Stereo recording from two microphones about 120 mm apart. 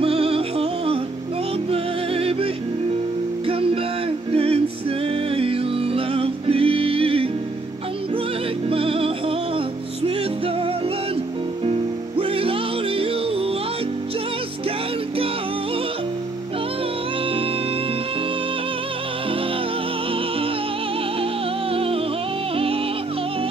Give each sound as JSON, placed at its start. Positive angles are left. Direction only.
{"t": 0.0, "sound": "music", "side_deg": -50}
{"t": 8.6, "sound": "music", "side_deg": -50}
{"t": 21.7, "sound": "music", "side_deg": -50}